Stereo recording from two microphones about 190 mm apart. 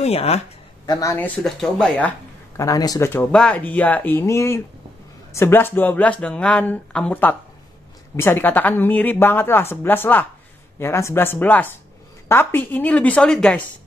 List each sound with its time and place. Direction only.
0.0 s speech: 35° left (ahead or behind)
0.8 s speech: 20° left (ahead or behind)
1.1 s speech: 5° left (ahead or behind)